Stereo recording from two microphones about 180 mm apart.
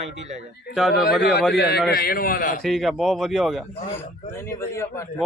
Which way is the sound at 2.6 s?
Centre (ahead or behind).